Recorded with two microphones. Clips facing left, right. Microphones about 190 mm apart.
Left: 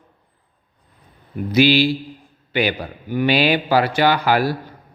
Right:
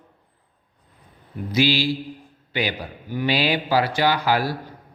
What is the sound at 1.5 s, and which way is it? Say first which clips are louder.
A man's voice: left 5 dB; 60° left (ahead or behind).